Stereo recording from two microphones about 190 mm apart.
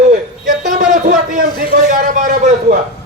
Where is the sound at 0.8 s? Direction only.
45° right (ahead or behind).